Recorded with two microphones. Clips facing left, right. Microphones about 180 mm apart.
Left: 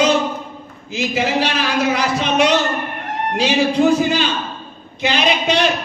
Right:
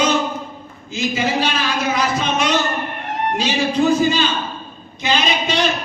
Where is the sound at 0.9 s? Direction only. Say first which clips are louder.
Left 1 dB; 70° left (ahead or behind).